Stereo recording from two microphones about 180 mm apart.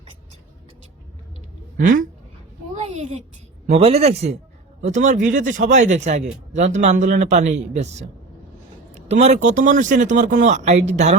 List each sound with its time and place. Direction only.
2.7 s a sound: 40° right (ahead or behind)
3.7 s speech: 35° right (ahead or behind)
9.0 s speech: 35° right (ahead or behind)